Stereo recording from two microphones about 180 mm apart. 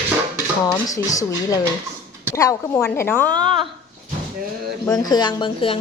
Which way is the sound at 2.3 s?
20° left (ahead or behind).